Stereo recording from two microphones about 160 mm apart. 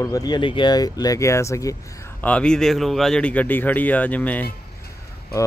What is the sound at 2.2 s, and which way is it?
Speech, 5° left (ahead or behind).